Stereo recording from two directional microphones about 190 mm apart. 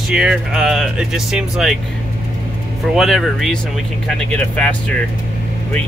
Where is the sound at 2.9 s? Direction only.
Centre (ahead or behind).